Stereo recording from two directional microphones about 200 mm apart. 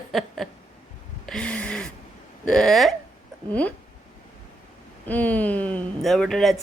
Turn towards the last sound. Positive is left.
turn(degrees=0)  # may be behind; listen again after turning